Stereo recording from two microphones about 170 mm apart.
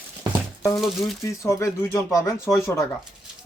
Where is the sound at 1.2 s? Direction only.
15° left (ahead or behind).